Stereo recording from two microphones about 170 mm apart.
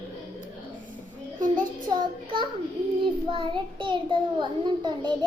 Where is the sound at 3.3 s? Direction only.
30° right (ahead or behind).